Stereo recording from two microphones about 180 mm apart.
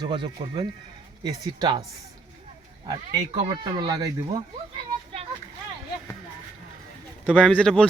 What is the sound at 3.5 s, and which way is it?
Speech, 25° right (ahead or behind).